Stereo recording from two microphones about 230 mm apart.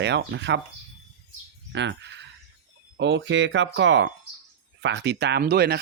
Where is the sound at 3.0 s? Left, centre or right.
Right.